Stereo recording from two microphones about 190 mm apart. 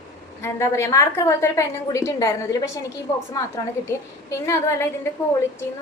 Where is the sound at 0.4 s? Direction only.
15° left (ahead or behind).